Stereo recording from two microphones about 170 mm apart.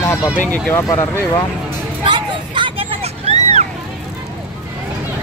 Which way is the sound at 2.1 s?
30° right (ahead or behind).